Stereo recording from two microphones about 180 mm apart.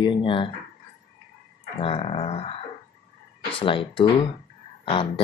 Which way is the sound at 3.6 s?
30° left (ahead or behind).